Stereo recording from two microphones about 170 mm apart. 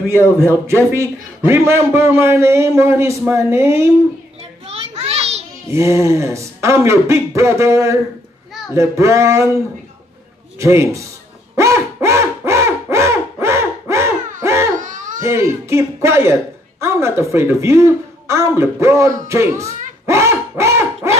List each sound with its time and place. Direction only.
0.4 s a man's voice: 15° right (ahead or behind)
4.4 s children playing: 35° right (ahead or behind)
5.7 s a man's voice: 15° right (ahead or behind)
10.6 s a man's voice: 15° right (ahead or behind)
11.5 s a sound: 15° right (ahead or behind)
14.8 s a sound: 50° right (ahead or behind)
15.1 s a man's voice: 15° right (ahead or behind)
20.1 s dog: 15° right (ahead or behind)